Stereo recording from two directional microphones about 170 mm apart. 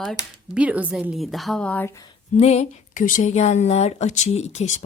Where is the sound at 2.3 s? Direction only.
40° left (ahead or behind).